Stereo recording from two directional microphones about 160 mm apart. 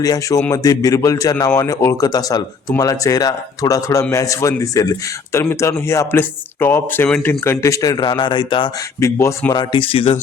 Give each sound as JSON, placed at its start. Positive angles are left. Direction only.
{"t": 0.0, "sound": "speech", "side_deg": 20}
{"t": 9.0, "sound": "speech", "side_deg": 15}